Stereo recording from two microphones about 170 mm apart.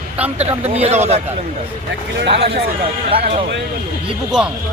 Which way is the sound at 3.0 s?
35° right (ahead or behind).